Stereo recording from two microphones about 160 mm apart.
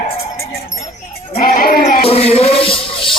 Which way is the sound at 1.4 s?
65° left (ahead or behind).